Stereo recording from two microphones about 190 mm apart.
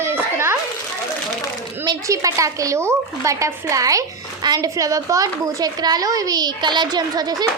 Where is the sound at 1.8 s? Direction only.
20° right (ahead or behind).